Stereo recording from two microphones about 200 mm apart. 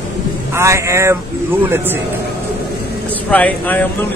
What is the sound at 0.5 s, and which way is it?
Speech, 15° right (ahead or behind).